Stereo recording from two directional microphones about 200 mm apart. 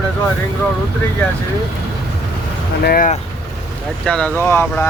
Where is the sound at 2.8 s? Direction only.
45° left (ahead or behind).